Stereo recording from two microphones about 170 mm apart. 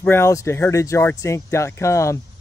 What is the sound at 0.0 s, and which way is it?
Speech, 15° left (ahead or behind).